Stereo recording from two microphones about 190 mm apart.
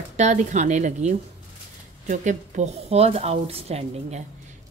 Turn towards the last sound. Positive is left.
turn(degrees=-35)  # may be behind; listen again after turning